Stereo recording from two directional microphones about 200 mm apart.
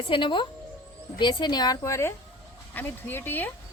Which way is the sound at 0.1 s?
25° left (ahead or behind).